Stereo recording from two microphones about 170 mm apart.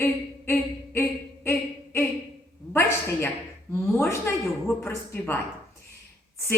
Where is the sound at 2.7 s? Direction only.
15° left (ahead or behind).